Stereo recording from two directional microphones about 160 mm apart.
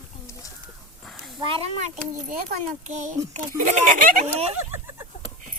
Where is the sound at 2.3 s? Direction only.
55° right (ahead or behind).